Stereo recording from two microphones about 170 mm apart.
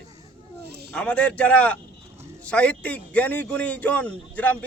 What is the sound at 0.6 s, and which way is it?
Speech, 75° right (ahead or behind).